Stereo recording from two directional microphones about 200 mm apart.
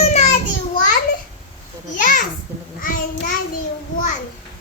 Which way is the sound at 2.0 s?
40° left (ahead or behind).